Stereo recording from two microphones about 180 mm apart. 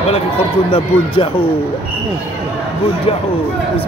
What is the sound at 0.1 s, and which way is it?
A man's voice, 35° left (ahead or behind).